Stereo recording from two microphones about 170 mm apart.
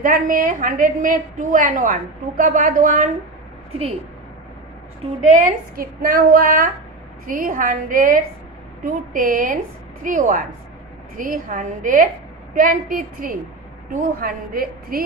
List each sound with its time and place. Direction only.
0.0 s a woman's voice: 55° right (ahead or behind)
5.2 s a woman's voice: 50° right (ahead or behind)